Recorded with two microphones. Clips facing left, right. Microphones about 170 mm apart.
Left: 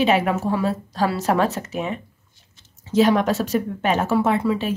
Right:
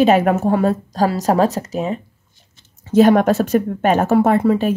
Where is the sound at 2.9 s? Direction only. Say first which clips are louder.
Right 5 dB; 50° right (ahead or behind).